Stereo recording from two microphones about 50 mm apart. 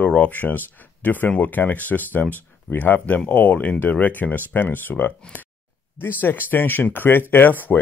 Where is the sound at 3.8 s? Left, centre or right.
Left.